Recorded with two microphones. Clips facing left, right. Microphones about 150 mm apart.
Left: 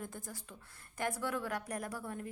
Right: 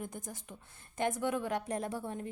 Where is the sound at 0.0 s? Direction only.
20° right (ahead or behind).